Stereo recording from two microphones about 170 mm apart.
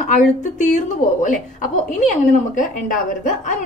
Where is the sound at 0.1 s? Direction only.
45° left (ahead or behind).